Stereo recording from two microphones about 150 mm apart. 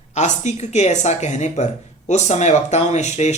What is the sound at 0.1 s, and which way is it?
Speech, 50° left (ahead or behind).